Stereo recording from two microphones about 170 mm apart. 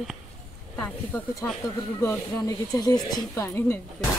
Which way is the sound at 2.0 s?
20° left (ahead or behind).